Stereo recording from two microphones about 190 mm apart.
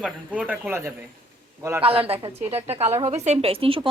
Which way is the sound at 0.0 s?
5° right (ahead or behind).